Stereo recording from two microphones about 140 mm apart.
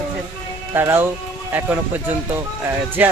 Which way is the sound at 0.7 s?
15° right (ahead or behind).